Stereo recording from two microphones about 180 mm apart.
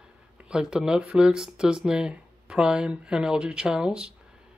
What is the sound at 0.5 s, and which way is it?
Speech, 5° right (ahead or behind).